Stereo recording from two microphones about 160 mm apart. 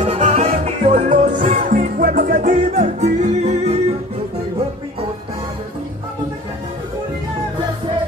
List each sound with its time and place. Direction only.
0.1 s music: 40° right (ahead or behind)